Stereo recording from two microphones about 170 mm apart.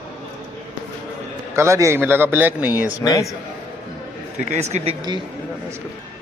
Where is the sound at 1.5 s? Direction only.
15° right (ahead or behind).